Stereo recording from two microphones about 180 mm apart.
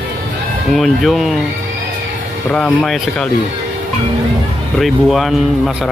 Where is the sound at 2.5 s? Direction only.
5° left (ahead or behind).